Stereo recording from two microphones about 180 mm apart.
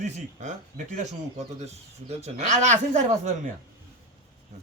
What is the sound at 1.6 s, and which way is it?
Speech, 35° right (ahead or behind).